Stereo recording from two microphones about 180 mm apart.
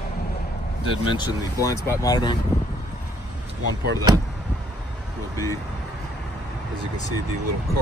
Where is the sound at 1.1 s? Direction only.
20° left (ahead or behind).